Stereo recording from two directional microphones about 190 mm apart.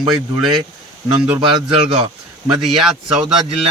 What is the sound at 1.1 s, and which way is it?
Speech, 20° right (ahead or behind).